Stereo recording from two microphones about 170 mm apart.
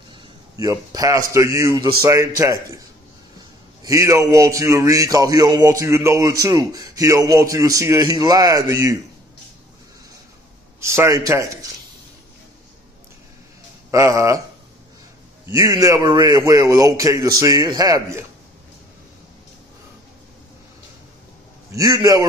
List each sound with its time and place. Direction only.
0.6 s a man's voice: 20° right (ahead or behind)
3.8 s speech: 20° right (ahead or behind)
10.8 s speech: 15° right (ahead or behind)
13.8 s speech: 15° right (ahead or behind)
15.4 s speech: 20° right (ahead or behind)
21.7 s speech: 20° right (ahead or behind)